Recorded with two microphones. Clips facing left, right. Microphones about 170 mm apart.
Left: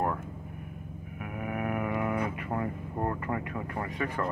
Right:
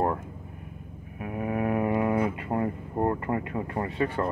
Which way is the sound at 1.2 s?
30° right (ahead or behind).